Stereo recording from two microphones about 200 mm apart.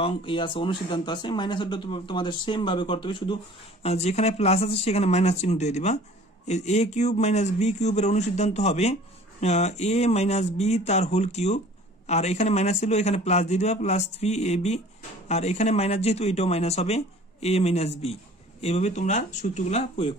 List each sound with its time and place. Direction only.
0.0 s speech: 25° left (ahead or behind)